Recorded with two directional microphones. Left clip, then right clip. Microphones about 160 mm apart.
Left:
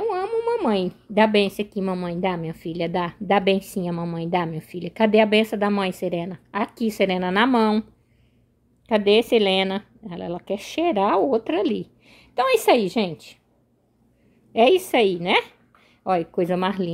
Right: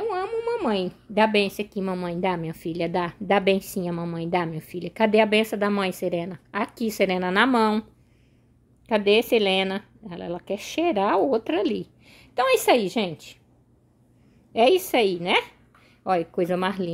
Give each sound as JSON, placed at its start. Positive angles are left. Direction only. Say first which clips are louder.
{"t": 0.0, "sound": "a woman's voice", "louder": "left 3 dB", "side_deg": 5}
{"t": 8.8, "sound": "a woman's voice", "louder": "left 2 dB", "side_deg": 0}
{"t": 14.5, "sound": "a woman's voice", "louder": "left 2 dB", "side_deg": 0}